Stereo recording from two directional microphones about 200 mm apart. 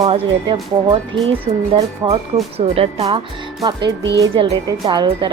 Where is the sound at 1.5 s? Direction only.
30° right (ahead or behind).